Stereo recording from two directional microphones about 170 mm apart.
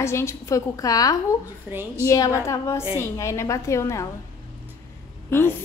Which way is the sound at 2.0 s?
20° left (ahead or behind).